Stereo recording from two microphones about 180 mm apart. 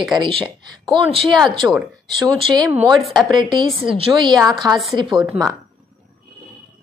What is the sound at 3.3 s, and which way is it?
A woman's voice, 25° right (ahead or behind).